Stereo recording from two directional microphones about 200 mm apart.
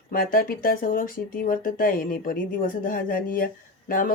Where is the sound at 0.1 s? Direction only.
45° left (ahead or behind).